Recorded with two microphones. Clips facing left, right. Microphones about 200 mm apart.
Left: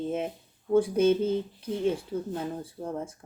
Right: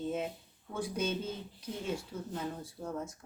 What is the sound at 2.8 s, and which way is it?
Speech, 30° left (ahead or behind).